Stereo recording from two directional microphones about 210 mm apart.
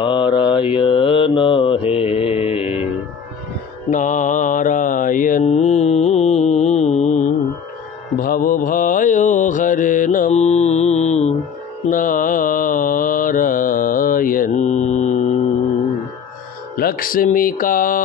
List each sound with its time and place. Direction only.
0.0 s mantra: 20° left (ahead or behind)
3.9 s mantra: 35° left (ahead or behind)
16.7 s speech: 45° left (ahead or behind)